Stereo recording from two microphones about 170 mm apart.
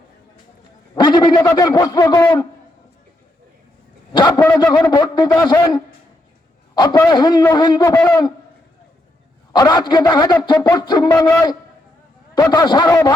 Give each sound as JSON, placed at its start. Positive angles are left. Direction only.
{"t": 0.9, "sound": "a man's voice", "side_deg": 25}
{"t": 4.1, "sound": "a man's voice", "side_deg": 25}
{"t": 7.9, "sound": "a man's voice", "side_deg": 10}
{"t": 9.5, "sound": "a man's voice", "side_deg": 25}